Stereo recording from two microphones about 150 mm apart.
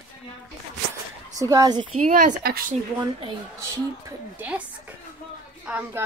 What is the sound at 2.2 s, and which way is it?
Speech, 75° right (ahead or behind).